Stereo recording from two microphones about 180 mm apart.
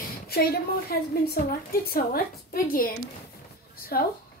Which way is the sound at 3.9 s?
55° left (ahead or behind).